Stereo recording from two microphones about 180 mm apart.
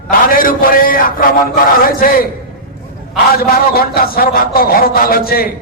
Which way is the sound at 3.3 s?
55° left (ahead or behind).